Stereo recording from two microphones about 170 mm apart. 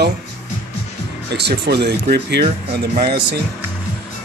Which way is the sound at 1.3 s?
75° right (ahead or behind).